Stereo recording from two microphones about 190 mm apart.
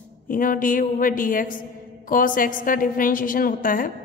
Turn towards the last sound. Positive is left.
turn(degrees=45)  # may be behind; listen again after turning